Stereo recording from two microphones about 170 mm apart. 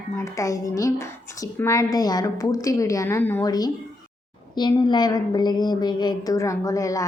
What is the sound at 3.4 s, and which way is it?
Speech, 20° left (ahead or behind).